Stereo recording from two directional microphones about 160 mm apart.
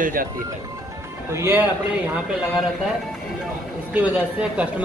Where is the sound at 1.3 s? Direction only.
15° right (ahead or behind).